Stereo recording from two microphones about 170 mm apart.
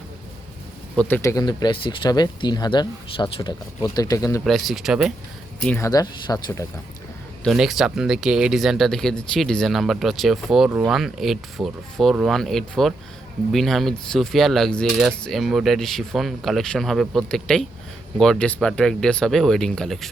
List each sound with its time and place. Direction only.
0.9 s speech: 10° left (ahead or behind); by 3.5 s 30° left (ahead or behind)
3.9 s speech: 20° left (ahead or behind)
4.4 s speech: centre (ahead or behind)
5.6 s speech: 15° left (ahead or behind)
7.4 s speech: centre (ahead or behind)